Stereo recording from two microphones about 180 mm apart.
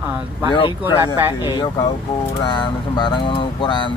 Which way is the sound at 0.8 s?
15° right (ahead or behind).